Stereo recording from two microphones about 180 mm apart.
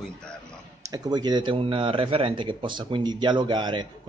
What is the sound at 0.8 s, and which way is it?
A man's voice, 20° right (ahead or behind).